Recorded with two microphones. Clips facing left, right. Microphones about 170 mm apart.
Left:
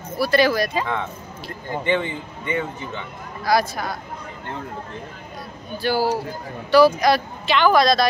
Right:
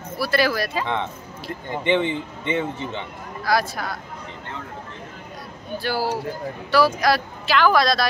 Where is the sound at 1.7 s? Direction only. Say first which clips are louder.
Right 1 dB; 20° right (ahead or behind).